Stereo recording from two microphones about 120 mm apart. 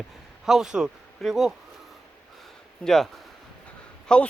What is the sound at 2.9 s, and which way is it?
A man's voice, centre (ahead or behind).